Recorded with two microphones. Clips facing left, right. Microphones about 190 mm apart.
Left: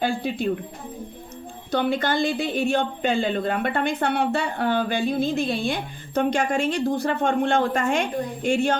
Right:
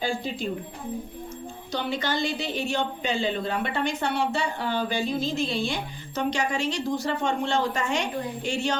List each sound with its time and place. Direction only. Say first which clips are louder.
0.0 s a woman's voice: left 4 dB; 60° left (ahead or behind)
1.7 s speech: left 6 dB; 55° left (ahead or behind)